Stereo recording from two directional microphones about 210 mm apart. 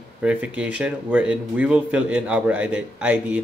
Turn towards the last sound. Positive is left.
turn(degrees=-5)  # may be behind; listen again after turning